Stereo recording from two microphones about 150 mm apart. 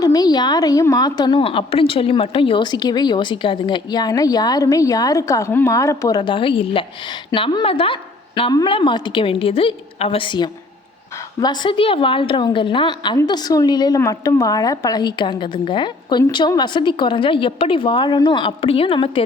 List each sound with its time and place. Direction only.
0.0 s a woman's voice: 25° left (ahead or behind)